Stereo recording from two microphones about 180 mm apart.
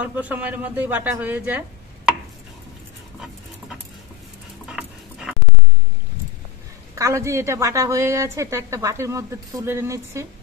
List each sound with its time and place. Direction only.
0.2 s a woman's voice: 10° right (ahead or behind)
4.6 s dog: 5° right (ahead or behind)
7.0 s a woman's voice: 15° right (ahead or behind)